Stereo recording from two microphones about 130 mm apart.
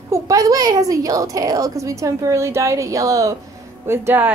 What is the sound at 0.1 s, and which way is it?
A woman's voice, 25° right (ahead or behind).